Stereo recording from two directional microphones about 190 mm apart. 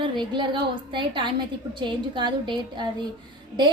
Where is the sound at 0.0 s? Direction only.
25° right (ahead or behind).